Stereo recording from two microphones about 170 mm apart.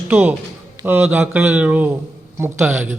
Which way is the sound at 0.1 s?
10° right (ahead or behind).